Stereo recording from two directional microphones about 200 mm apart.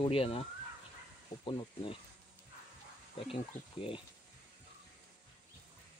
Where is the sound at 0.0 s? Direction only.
30° left (ahead or behind).